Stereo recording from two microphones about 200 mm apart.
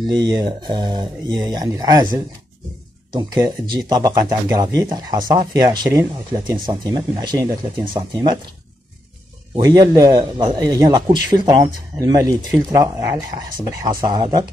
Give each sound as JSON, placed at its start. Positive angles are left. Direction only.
{"t": 0.0, "sound": "speech", "side_deg": -20}
{"t": 9.6, "sound": "speech", "side_deg": -20}